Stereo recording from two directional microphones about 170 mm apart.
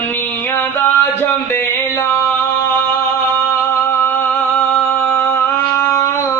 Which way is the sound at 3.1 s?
10° left (ahead or behind).